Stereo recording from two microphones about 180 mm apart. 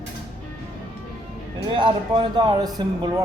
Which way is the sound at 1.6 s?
30° right (ahead or behind).